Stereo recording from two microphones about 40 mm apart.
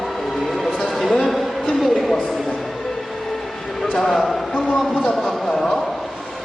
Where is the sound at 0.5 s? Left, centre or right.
Centre.